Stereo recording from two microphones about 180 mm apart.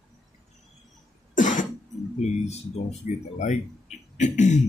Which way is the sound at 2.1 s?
40° left (ahead or behind).